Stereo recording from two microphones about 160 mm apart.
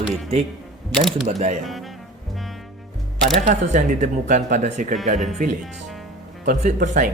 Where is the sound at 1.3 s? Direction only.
45° right (ahead or behind).